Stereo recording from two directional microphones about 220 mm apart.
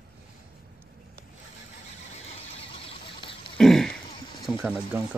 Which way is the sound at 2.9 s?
25° left (ahead or behind).